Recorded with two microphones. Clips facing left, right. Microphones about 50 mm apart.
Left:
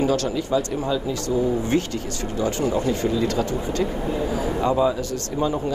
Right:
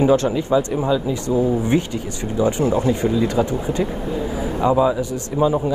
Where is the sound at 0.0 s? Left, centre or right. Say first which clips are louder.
Right 5 dB; right.